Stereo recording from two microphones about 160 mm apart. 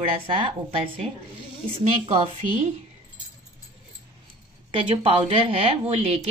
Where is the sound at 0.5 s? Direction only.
35° right (ahead or behind).